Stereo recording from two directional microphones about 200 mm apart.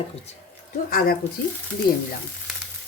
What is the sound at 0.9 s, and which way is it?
Speech, 45° left (ahead or behind).